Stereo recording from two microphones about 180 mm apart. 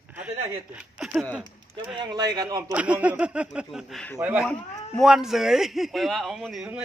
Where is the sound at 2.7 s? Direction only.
10° right (ahead or behind).